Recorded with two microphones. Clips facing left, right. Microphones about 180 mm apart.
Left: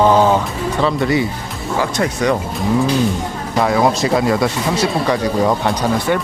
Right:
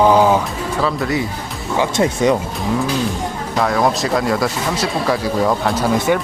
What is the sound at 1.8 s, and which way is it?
Speech, 20° right (ahead or behind).